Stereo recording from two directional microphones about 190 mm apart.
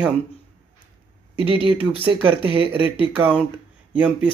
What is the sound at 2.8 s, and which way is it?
Speech, 25° left (ahead or behind).